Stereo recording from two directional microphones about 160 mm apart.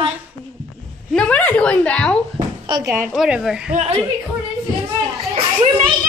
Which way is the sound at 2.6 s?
25° right (ahead or behind).